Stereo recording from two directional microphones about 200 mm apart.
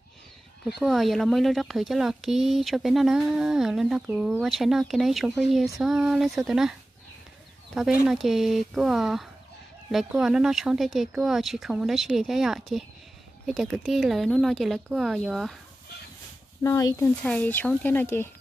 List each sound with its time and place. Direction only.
0.7 s speech: centre (ahead or behind)
7.7 s speech: 5° right (ahead or behind)
16.6 s speech: 15° left (ahead or behind)